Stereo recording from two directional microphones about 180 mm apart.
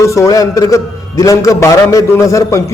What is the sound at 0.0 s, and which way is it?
A man's voice, 15° left (ahead or behind).